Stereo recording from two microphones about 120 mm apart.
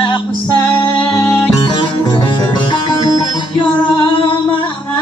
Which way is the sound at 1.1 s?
25° left (ahead or behind).